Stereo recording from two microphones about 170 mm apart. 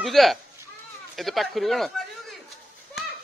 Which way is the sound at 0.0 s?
Centre (ahead or behind).